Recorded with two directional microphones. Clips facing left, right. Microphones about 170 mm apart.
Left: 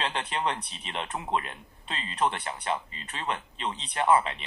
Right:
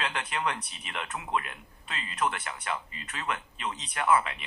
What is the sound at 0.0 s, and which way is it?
Speech, 25° left (ahead or behind).